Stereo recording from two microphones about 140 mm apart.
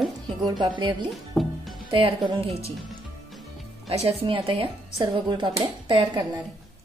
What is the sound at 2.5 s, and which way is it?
Speech, 45° right (ahead or behind).